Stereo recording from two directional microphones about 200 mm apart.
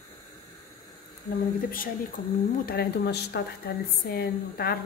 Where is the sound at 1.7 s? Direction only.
45° left (ahead or behind).